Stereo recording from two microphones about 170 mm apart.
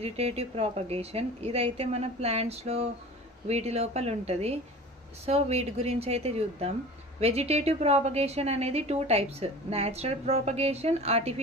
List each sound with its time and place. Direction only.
0.0 s a woman's voice: 35° right (ahead or behind)